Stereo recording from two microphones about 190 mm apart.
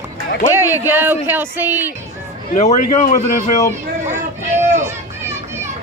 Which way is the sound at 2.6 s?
40° left (ahead or behind).